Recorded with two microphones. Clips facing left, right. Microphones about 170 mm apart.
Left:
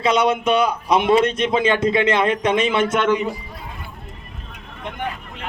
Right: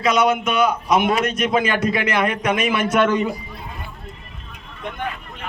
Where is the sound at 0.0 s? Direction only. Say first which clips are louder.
Even; 30° left (ahead or behind).